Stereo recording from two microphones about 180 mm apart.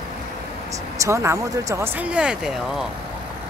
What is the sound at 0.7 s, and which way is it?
Speech, 15° right (ahead or behind).